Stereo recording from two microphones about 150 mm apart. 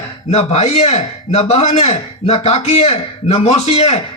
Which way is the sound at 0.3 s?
45° left (ahead or behind).